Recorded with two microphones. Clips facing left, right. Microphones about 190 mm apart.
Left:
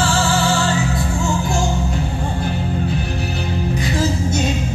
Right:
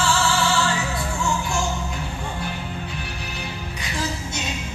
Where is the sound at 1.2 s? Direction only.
40° left (ahead or behind).